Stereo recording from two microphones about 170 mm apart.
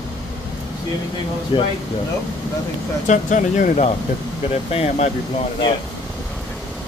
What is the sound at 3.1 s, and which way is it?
Speech, 50° left (ahead or behind).